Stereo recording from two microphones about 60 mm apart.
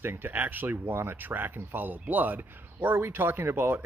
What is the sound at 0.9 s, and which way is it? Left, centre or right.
Speech, right.